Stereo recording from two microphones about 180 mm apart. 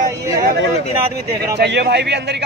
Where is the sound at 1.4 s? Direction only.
65° right (ahead or behind).